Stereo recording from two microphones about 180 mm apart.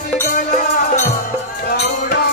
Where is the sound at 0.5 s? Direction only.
45° left (ahead or behind).